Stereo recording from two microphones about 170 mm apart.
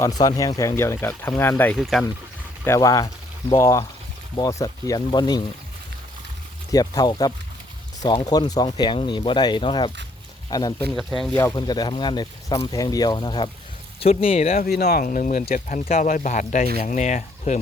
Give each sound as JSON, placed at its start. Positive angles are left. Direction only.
{"t": 0.0, "sound": "speech", "side_deg": 20}
{"t": 1.8, "sound": "speech", "side_deg": 0}
{"t": 2.6, "sound": "speech", "side_deg": 20}
{"t": 6.7, "sound": "speech", "side_deg": 20}
{"t": 10.9, "sound": "speech", "side_deg": 0}
{"t": 11.3, "sound": "speech", "side_deg": 20}
{"t": 14.6, "sound": "speech", "side_deg": 70}
{"t": 15.0, "sound": "speech", "side_deg": 50}